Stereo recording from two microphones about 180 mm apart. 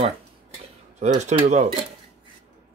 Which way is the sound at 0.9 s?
40° right (ahead or behind).